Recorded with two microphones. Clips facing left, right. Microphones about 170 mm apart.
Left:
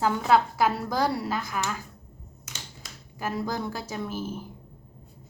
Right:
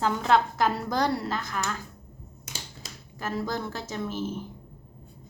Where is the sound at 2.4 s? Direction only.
30° right (ahead or behind).